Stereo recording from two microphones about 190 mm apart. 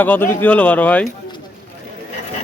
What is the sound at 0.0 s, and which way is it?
Speech, 10° left (ahead or behind).